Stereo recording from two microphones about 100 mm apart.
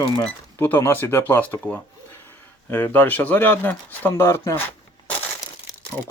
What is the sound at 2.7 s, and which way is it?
Speech, 20° left (ahead or behind).